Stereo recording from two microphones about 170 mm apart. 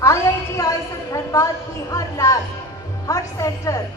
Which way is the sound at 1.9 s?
20° left (ahead or behind).